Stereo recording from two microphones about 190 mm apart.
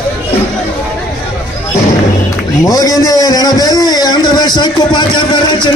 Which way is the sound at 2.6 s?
20° left (ahead or behind).